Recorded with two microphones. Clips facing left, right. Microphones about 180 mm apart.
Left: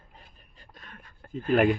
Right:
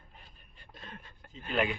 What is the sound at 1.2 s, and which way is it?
Speech, 50° left (ahead or behind).